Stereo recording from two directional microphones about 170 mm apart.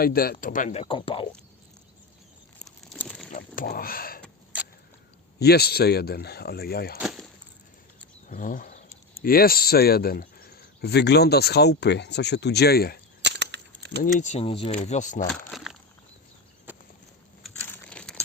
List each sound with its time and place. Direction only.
0.0 s speech: 60° left (ahead or behind); by 1.3 s 30° left (ahead or behind)
2.6 s crumpling: 5° left (ahead or behind)
3.3 s a sound: 55° left (ahead or behind)
5.4 s speech: 70° left (ahead or behind)
7.0 s a sound: centre (ahead or behind)
8.3 s speech: 55° left (ahead or behind)
13.2 s a sound: 90° right
14.0 s speech: 45° left (ahead or behind)
14.4 s speech: 30° left (ahead or behind)
14.7 s speech: 45° left (ahead or behind)
15.3 s speech: centre (ahead or behind)
16.7 s a sound: 10° right (ahead or behind)
17.4 s crumpling: 5° left (ahead or behind)